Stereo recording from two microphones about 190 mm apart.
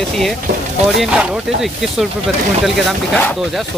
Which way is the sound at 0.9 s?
Centre (ahead or behind).